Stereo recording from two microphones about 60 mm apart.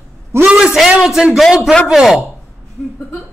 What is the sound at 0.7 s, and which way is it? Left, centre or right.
A man's voice, centre.